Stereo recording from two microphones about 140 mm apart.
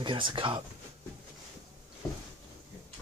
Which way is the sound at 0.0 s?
35° right (ahead or behind).